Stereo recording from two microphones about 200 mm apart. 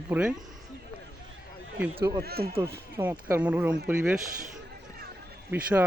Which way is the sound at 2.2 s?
50° right (ahead or behind).